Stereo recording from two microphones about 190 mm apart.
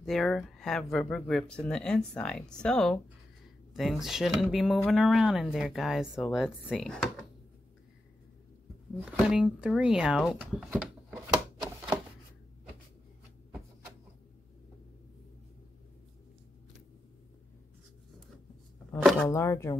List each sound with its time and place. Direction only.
0.0 s speech: centre (ahead or behind)
9.0 s speech: 5° right (ahead or behind)
18.9 s shuffling cards: 5° left (ahead or behind)
19.2 s speech: 15° left (ahead or behind)